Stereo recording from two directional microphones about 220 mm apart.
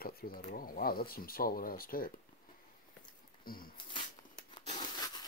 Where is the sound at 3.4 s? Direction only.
40° left (ahead or behind).